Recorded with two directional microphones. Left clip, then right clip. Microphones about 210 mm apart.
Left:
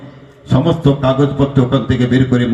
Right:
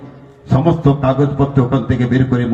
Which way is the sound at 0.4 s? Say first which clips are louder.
Even; 45° left (ahead or behind).